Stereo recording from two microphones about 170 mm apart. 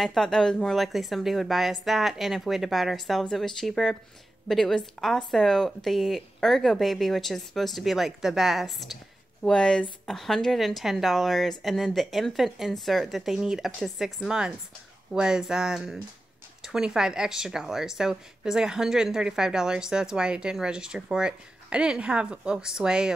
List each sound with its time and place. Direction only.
0.0 s speech: centre (ahead or behind)